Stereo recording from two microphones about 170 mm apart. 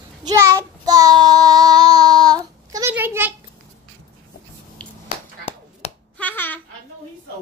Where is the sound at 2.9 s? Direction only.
10° right (ahead or behind).